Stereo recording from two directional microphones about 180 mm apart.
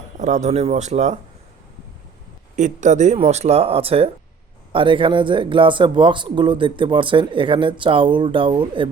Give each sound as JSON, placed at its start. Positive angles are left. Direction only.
{"t": 0.2, "sound": "speech", "side_deg": -45}
{"t": 2.6, "sound": "speech", "side_deg": -40}